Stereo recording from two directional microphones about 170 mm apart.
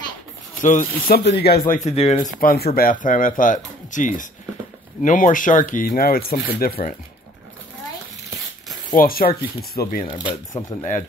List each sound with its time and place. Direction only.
0.6 s speech: 50° left (ahead or behind); by 1.6 s 75° left (ahead or behind)
1.7 s speech: 45° left (ahead or behind)
8.9 s speech: 60° left (ahead or behind)
10.2 s speech: 25° left (ahead or behind)